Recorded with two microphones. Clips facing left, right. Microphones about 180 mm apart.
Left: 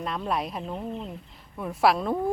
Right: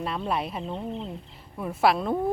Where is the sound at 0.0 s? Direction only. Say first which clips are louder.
Even; 5° right (ahead or behind).